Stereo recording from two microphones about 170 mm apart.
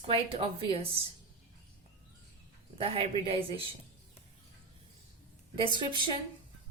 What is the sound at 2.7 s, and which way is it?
Speech, 35° right (ahead or behind).